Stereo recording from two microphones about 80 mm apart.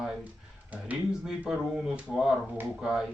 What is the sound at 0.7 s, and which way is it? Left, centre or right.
Speech, centre.